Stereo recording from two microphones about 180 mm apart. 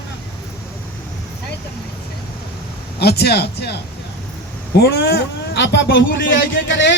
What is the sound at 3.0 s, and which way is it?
Speech, 60° left (ahead or behind).